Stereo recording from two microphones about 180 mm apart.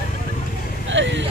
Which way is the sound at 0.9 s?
90° right.